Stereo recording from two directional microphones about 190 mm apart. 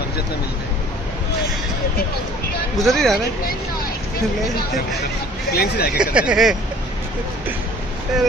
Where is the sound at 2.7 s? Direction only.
Centre (ahead or behind).